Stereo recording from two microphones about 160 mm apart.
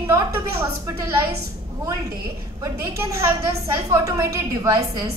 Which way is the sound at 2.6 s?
20° right (ahead or behind).